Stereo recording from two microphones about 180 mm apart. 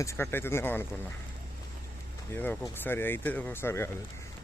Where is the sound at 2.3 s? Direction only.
10° left (ahead or behind).